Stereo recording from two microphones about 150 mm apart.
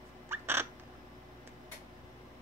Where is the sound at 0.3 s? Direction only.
15° right (ahead or behind).